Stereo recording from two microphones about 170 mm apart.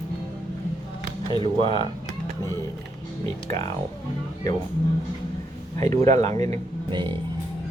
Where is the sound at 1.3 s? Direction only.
30° right (ahead or behind).